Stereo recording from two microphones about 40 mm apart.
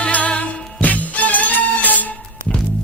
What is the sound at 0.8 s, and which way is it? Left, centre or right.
Music, left.